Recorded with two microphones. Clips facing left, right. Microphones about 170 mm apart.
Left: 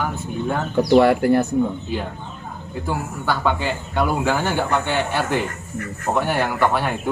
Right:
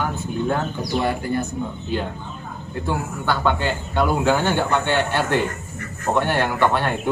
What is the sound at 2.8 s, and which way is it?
Speech, 5° left (ahead or behind).